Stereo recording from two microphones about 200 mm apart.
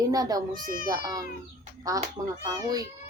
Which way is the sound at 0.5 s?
45° right (ahead or behind).